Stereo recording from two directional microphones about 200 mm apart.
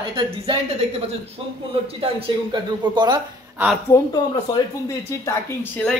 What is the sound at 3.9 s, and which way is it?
Speech, 15° left (ahead or behind).